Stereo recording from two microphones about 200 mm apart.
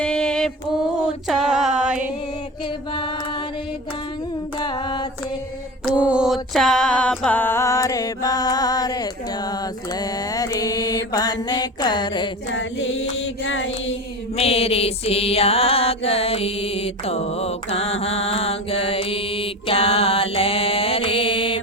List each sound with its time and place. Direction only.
0.0 s a sound: 5° left (ahead or behind)
4.5 s singing: 20° left (ahead or behind)
5.8 s mantra: 5° right (ahead or behind); by 12.3 s 20° left (ahead or behind)
12.5 s mantra: 70° left (ahead or behind)
14.3 s music: 30° left (ahead or behind)